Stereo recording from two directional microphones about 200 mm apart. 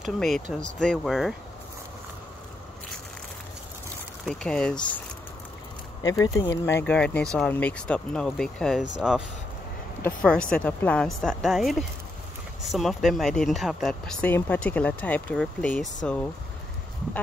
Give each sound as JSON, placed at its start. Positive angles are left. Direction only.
{"t": 0.0, "sound": "speech", "side_deg": 0}
{"t": 4.3, "sound": "speech", "side_deg": 5}
{"t": 6.0, "sound": "speech", "side_deg": 20}